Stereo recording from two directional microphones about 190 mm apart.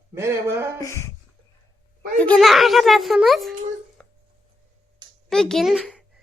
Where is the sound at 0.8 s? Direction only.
15° left (ahead or behind).